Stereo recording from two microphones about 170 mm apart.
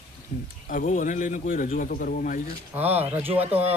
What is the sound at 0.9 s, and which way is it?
Speech, 50° left (ahead or behind).